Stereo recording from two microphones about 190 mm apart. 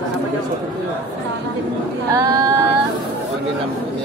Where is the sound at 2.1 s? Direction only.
20° right (ahead or behind).